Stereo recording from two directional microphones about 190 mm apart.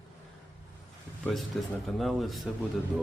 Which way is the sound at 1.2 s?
Centre (ahead or behind).